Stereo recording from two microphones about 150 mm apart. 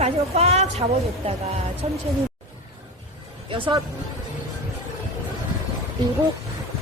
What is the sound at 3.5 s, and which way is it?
Speech, 30° right (ahead or behind).